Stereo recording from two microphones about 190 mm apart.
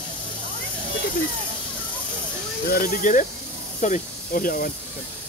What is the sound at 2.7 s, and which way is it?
Speech, 45° left (ahead or behind).